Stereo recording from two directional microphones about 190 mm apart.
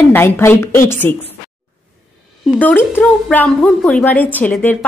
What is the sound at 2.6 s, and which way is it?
Speech, 10° left (ahead or behind).